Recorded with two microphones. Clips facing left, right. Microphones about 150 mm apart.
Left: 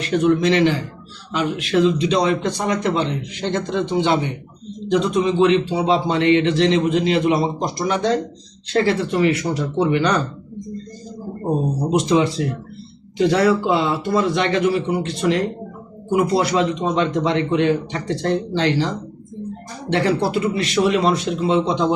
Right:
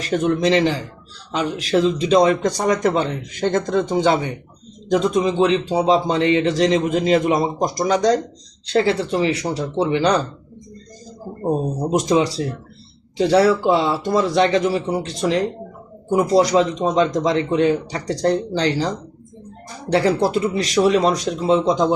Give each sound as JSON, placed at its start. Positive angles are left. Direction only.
{"t": 0.0, "sound": "speech", "side_deg": -40}
{"t": 11.9, "sound": "speech", "side_deg": -45}